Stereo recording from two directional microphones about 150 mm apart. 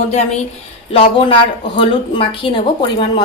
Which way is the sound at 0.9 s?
40° left (ahead or behind).